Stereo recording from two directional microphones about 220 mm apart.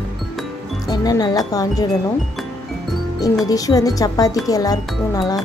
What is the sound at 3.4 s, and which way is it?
Speech, 15° left (ahead or behind).